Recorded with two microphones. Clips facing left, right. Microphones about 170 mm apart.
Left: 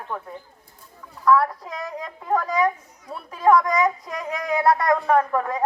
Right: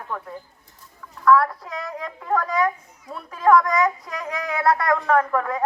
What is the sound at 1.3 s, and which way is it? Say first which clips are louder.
A woman's voice: right 1 dB; 15° left (ahead or behind).